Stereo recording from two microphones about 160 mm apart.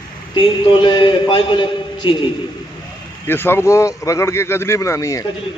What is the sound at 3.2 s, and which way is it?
Speech, 15° left (ahead or behind).